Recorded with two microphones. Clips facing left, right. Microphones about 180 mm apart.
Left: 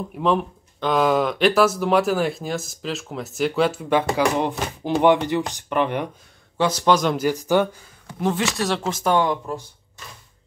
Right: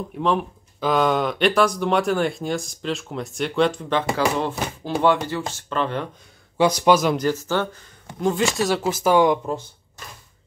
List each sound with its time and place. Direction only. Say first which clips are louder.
0.2 s speech: left 1 dB; centre (ahead or behind); by 6.0 s 15° left (ahead or behind)
6.6 s speech: right 2 dB; 15° right (ahead or behind)
7.2 s speech: left 3 dB; 15° left (ahead or behind)
8.2 s speech: right 2 dB; centre (ahead or behind); by 9.6 s 15° right (ahead or behind)